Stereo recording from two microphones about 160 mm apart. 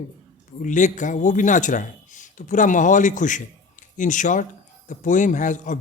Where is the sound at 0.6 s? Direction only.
50° left (ahead or behind).